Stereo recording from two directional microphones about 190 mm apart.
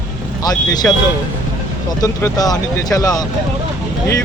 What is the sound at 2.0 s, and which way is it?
Speech, 20° left (ahead or behind).